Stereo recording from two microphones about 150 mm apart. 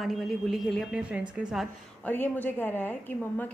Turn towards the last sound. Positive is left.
turn(degrees=15)  # may be behind; listen again after turning